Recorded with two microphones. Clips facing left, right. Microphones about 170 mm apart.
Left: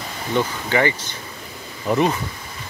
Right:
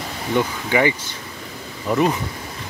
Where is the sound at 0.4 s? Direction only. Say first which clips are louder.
Right 1 dB; 10° right (ahead or behind).